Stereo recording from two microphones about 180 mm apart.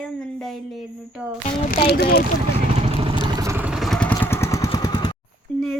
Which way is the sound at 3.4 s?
15° right (ahead or behind).